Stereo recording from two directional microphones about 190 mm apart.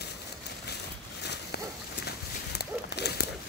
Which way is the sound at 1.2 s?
60° left (ahead or behind).